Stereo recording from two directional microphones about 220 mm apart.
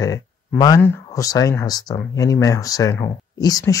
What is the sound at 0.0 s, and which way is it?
Speech, 15° left (ahead or behind).